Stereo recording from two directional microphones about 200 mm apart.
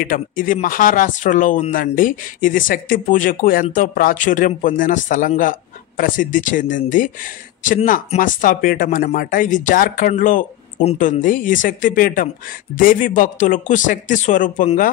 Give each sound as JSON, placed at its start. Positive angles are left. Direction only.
{"t": 0.0, "sound": "speech", "side_deg": 40}